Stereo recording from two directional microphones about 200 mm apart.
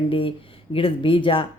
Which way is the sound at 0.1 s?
25° left (ahead or behind).